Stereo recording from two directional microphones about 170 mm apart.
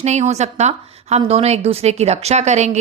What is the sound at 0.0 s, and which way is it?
Speech, 40° right (ahead or behind).